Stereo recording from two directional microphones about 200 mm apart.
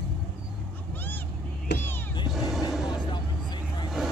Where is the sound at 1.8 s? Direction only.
10° left (ahead or behind).